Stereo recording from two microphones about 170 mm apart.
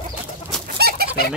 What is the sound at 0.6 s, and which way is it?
Chicken, 65° right (ahead or behind).